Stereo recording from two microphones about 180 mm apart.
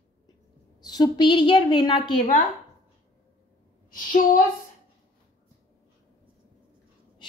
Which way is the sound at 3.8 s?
50° left (ahead or behind).